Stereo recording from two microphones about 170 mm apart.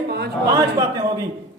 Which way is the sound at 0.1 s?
70° right (ahead or behind).